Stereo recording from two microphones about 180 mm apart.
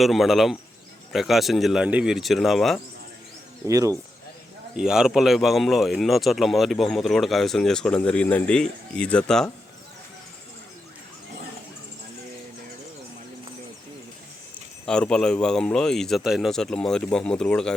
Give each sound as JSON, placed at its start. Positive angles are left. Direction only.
{"t": 0.0, "sound": "speech", "side_deg": 0}
{"t": 3.7, "sound": "speech", "side_deg": -20}
{"t": 4.8, "sound": "speech", "side_deg": -5}
{"t": 14.8, "sound": "speech", "side_deg": 5}